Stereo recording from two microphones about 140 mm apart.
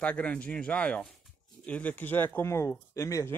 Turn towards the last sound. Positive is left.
turn(degrees=20)  # may be behind; listen again after turning